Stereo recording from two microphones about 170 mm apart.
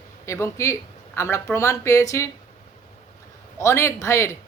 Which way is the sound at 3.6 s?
15° left (ahead or behind).